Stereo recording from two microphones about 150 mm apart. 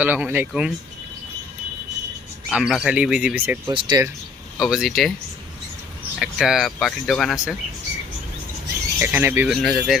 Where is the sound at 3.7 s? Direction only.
30° right (ahead or behind).